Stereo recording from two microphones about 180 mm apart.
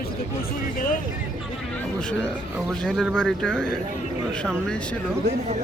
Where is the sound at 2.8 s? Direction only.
5° left (ahead or behind).